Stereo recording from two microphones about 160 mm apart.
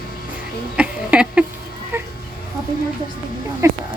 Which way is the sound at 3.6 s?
20° right (ahead or behind).